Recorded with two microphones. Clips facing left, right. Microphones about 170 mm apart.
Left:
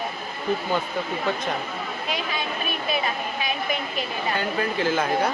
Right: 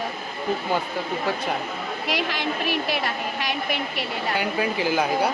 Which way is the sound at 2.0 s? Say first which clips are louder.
Right 4 dB; 90° right.